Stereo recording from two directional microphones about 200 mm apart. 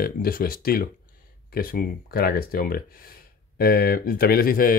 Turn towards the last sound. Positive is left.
turn(degrees=45)  # may be behind; listen again after turning